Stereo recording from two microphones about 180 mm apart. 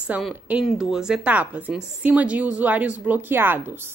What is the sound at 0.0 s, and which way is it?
A woman's voice, 5° right (ahead or behind).